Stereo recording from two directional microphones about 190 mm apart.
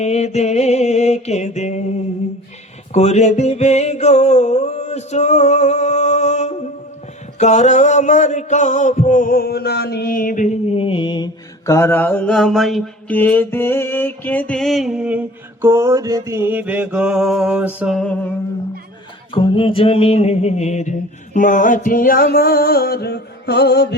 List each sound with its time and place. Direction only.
0.0 s mantra: 35° left (ahead or behind)
2.9 s music: 35° left (ahead or behind)
7.3 s a sound: 40° left (ahead or behind); by 17.9 s 10° right (ahead or behind)
17.9 s music: 5° left (ahead or behind)
19.3 s mantra: 30° left (ahead or behind)
21.3 s a sound: 45° left (ahead or behind); by 23.9 s 60° left (ahead or behind)